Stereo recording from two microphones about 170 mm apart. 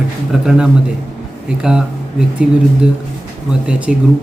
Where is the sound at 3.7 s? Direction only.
5° right (ahead or behind).